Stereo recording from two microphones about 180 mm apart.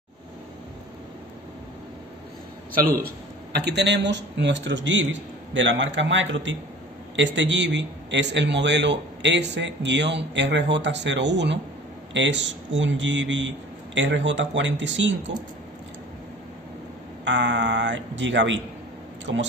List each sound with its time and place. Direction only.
3.5 s a man's voice: 70° right (ahead or behind)
12.1 s speech: 90° right
17.2 s speech: 80° right